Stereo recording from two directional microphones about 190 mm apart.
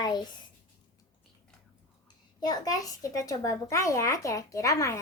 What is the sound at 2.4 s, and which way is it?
A child's voice, 20° left (ahead or behind).